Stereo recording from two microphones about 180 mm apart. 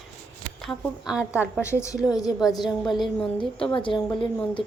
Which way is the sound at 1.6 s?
15° left (ahead or behind).